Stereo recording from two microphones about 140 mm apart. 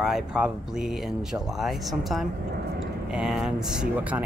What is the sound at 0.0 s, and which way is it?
Speech, 5° right (ahead or behind).